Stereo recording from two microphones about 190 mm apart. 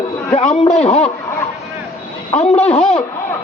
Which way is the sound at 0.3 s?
30° left (ahead or behind).